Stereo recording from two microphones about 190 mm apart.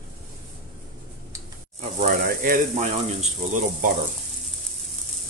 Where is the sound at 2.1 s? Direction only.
50° right (ahead or behind).